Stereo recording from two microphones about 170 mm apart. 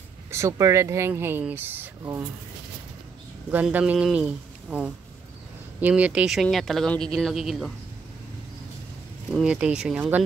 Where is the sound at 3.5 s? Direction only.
10° right (ahead or behind).